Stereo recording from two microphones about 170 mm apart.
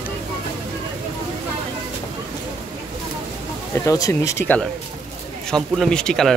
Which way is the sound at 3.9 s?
20° left (ahead or behind).